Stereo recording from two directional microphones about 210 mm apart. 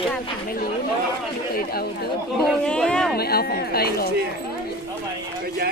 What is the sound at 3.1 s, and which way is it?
Speech, 45° left (ahead or behind).